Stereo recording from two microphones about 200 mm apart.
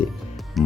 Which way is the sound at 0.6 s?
Centre (ahead or behind).